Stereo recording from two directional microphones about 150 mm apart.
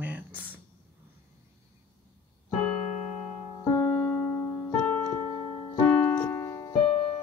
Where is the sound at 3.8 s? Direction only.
15° left (ahead or behind).